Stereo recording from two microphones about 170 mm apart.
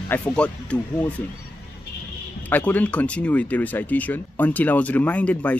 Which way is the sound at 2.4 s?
10° left (ahead or behind).